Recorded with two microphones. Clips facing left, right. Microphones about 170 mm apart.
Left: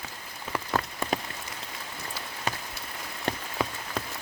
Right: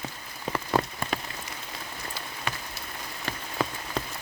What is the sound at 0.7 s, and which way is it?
Rain on surface, 15° right (ahead or behind).